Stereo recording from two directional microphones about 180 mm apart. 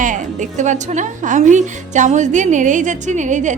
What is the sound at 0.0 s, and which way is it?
A woman's voice, 45° right (ahead or behind).